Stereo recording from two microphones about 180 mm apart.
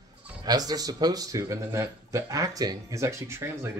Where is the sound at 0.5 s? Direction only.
20° right (ahead or behind).